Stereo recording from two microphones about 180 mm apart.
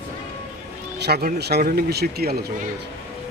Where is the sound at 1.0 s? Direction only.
60° right (ahead or behind).